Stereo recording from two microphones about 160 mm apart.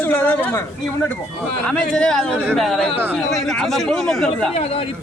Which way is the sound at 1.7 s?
5° left (ahead or behind).